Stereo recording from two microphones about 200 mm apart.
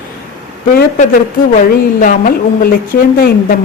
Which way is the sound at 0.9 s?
40° left (ahead or behind).